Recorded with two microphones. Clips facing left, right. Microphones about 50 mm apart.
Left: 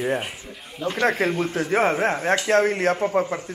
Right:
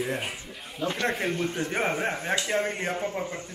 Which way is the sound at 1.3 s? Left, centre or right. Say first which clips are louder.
Left 6 dB; centre.